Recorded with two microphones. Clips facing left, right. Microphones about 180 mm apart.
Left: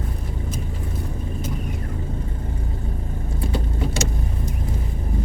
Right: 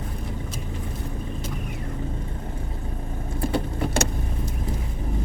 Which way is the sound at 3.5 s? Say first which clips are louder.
Right 1 dB; 60° right (ahead or behind).